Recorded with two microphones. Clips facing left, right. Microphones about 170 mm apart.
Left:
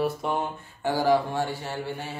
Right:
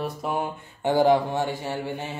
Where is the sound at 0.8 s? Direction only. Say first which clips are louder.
Right 3 dB; 20° right (ahead or behind).